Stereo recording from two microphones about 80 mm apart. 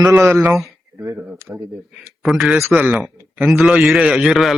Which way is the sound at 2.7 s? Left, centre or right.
Centre.